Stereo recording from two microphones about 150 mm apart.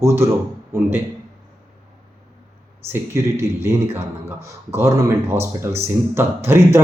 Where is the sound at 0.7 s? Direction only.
15° right (ahead or behind).